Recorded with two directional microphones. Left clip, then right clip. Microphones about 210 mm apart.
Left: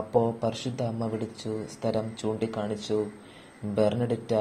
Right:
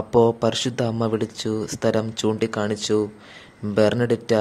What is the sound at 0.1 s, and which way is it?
Speech, 35° right (ahead or behind).